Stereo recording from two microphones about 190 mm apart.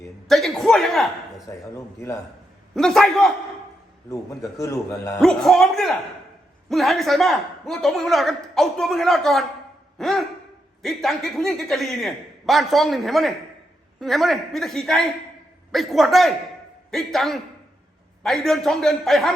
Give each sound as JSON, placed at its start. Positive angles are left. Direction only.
{"t": 0.3, "sound": "speech", "side_deg": 0}
{"t": 1.7, "sound": "a man's voice", "side_deg": 15}
{"t": 2.7, "sound": "speech", "side_deg": 0}
{"t": 4.5, "sound": "a man's voice", "side_deg": 15}
{"t": 5.2, "sound": "speech", "side_deg": 0}